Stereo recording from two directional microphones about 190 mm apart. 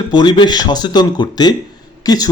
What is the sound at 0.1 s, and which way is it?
A man's voice, 25° left (ahead or behind).